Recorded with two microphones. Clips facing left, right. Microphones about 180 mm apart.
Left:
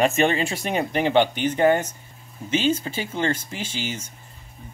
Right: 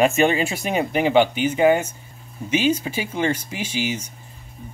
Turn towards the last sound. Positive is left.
turn(degrees=-10)  # may be behind; listen again after turning